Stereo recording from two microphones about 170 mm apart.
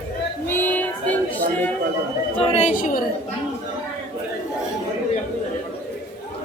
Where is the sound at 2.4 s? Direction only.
35° left (ahead or behind).